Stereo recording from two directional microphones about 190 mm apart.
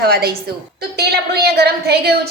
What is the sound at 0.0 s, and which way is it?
A woman's voice, 55° right (ahead or behind).